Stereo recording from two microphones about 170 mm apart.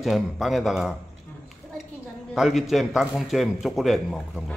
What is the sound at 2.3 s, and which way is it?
A man's voice, centre (ahead or behind).